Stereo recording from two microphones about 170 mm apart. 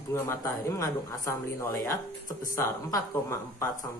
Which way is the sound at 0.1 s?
15° left (ahead or behind).